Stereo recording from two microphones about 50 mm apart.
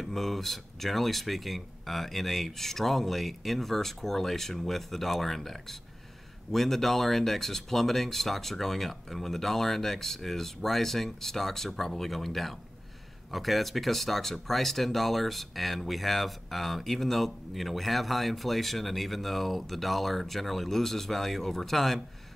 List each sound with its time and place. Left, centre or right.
0.0 s speech: centre